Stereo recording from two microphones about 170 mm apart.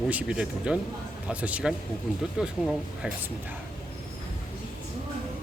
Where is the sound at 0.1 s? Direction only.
5° right (ahead or behind).